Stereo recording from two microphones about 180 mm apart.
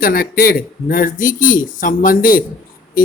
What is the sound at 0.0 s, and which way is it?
Speech, 55° left (ahead or behind).